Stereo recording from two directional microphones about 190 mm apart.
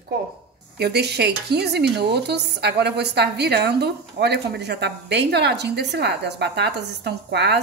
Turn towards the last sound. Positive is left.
turn(degrees=-60)  # may be behind; listen again after turning